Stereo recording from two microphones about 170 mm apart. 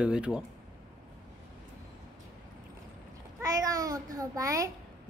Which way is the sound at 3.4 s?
20° right (ahead or behind).